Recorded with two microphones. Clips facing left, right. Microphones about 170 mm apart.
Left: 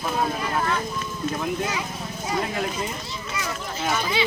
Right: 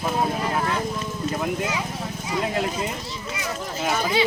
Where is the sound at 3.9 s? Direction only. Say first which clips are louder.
Right 3 dB; 40° right (ahead or behind).